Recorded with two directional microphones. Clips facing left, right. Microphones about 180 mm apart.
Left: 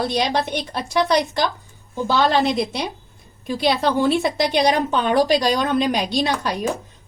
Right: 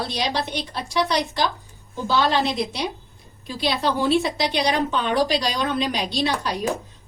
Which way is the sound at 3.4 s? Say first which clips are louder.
Left 4 dB; 55° left (ahead or behind).